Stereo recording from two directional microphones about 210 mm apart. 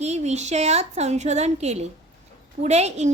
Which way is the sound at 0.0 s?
30° right (ahead or behind).